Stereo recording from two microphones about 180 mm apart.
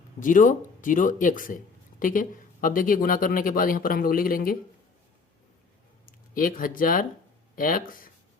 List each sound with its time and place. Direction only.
0.2 s speech: 45° left (ahead or behind)
6.1 s speech: 50° left (ahead or behind)